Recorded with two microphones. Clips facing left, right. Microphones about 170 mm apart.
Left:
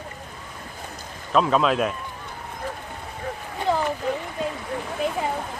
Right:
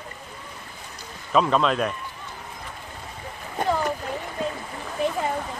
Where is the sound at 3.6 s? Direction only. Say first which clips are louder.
Even; 45° right (ahead or behind).